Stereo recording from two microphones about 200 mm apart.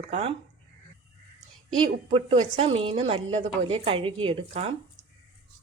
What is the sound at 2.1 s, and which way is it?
A woman's voice, 30° right (ahead or behind).